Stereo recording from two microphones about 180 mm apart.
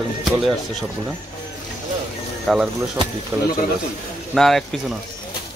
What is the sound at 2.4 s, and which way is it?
Speech, centre (ahead or behind).